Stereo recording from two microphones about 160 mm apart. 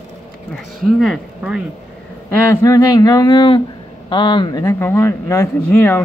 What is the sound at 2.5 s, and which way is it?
Speech, 20° left (ahead or behind).